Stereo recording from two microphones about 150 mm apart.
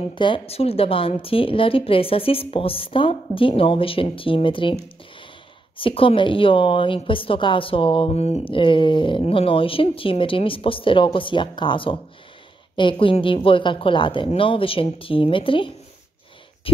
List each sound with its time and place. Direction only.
0.1 s a woman's voice: 35° left (ahead or behind)
5.8 s a woman's voice: 35° left (ahead or behind)
16.7 s a sound: 40° left (ahead or behind)